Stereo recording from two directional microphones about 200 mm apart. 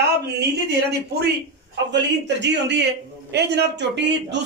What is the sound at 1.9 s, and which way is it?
Speech, 60° right (ahead or behind).